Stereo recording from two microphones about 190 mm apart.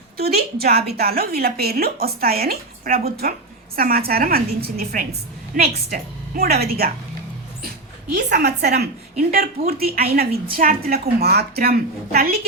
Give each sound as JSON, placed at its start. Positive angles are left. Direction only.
{"t": 0.2, "sound": "a woman's voice", "side_deg": -55}
{"t": 8.1, "sound": "a woman's voice", "side_deg": -60}